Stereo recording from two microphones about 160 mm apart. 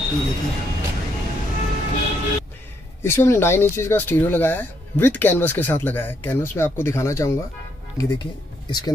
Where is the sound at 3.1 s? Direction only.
15° left (ahead or behind).